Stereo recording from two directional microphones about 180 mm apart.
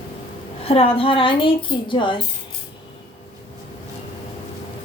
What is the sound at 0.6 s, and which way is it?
A woman's voice, 30° left (ahead or behind).